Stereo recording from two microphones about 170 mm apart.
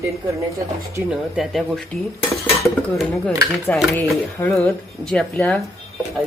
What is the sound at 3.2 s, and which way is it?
Speech, 5° left (ahead or behind).